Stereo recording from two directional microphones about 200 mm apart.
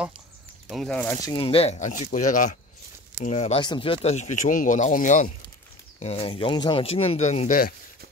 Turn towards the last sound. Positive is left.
turn(degrees=45)  # may be behind; listen again after turning